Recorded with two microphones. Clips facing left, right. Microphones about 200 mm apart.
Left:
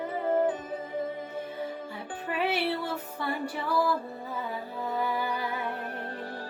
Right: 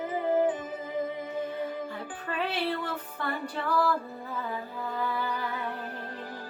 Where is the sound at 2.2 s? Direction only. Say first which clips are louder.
Left 2 dB; 15° left (ahead or behind).